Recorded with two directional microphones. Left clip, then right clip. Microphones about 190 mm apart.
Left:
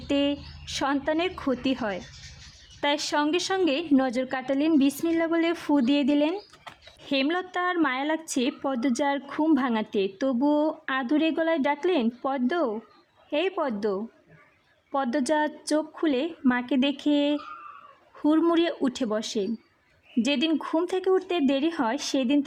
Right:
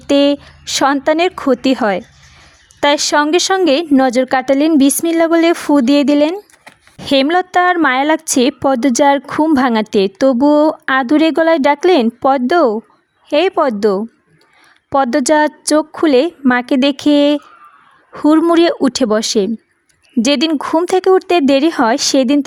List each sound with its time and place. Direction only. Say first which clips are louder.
0.1 s a woman's voice: right 14 dB; 45° right (ahead or behind)